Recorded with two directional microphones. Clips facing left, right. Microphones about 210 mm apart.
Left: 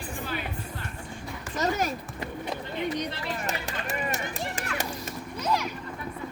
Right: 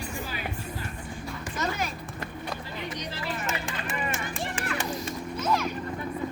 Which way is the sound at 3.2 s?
40° left (ahead or behind).